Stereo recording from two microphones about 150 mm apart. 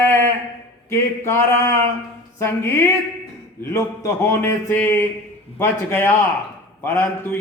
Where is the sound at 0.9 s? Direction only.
15° left (ahead or behind).